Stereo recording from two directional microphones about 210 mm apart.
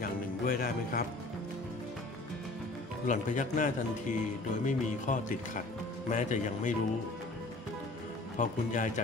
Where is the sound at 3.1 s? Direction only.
35° left (ahead or behind).